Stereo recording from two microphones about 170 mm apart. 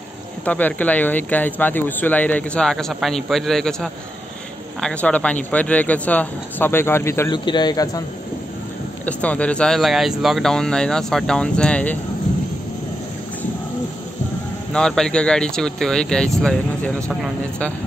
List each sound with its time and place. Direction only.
0.5 s speech: 10° left (ahead or behind)
7.3 s speech: 25° left (ahead or behind)
9.0 s speech: 10° left (ahead or behind)
14.7 s speech: 5° left (ahead or behind)